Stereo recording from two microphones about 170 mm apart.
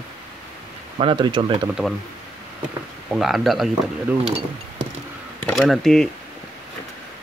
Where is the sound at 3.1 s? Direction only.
Centre (ahead or behind).